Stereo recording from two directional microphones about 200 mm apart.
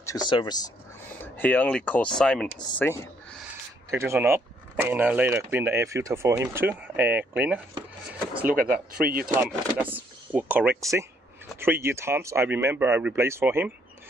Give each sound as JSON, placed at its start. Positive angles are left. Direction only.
{"t": 0.0, "sound": "speech", "side_deg": 20}
{"t": 1.2, "sound": "speech", "side_deg": 10}
{"t": 3.9, "sound": "speech", "side_deg": -10}
{"t": 8.1, "sound": "a sound", "side_deg": -5}
{"t": 9.0, "sound": "speech", "side_deg": -45}
{"t": 9.3, "sound": "speech", "side_deg": -10}